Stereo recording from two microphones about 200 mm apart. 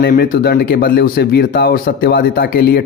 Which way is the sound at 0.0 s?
50° left (ahead or behind).